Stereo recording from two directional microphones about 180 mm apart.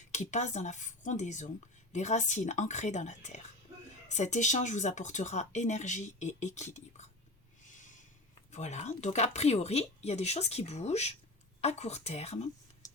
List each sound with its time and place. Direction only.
0.1 s speech: 40° left (ahead or behind)
7.7 s snort: 45° left (ahead or behind)
8.4 s speech: 40° left (ahead or behind)